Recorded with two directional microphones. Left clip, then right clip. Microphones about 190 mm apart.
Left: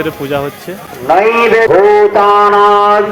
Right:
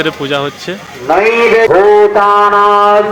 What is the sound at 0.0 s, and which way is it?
Speech, 5° right (ahead or behind).